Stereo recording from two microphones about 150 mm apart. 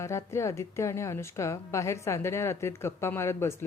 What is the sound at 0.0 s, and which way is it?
A woman's voice, 20° left (ahead or behind).